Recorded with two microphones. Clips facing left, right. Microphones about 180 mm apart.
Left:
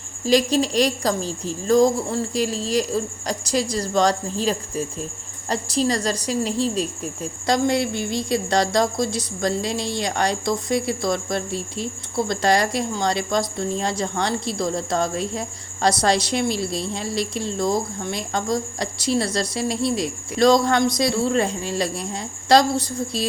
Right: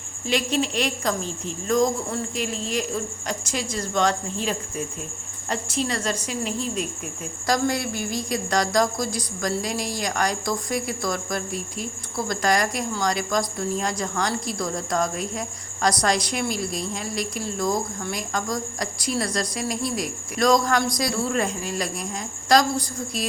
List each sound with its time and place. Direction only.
0.3 s a woman's voice: 35° left (ahead or behind)